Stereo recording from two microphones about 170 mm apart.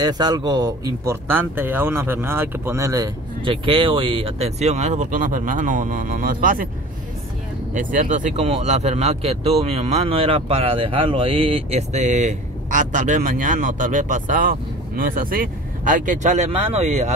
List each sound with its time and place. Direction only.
0.0 s speech: 25° right (ahead or behind)
3.6 s speech: 30° right (ahead or behind); by 6.7 s 55° right (ahead or behind)
7.7 s speech: 50° right (ahead or behind)